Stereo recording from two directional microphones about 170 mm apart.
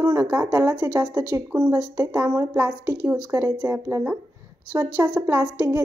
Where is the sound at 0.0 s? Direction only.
15° right (ahead or behind).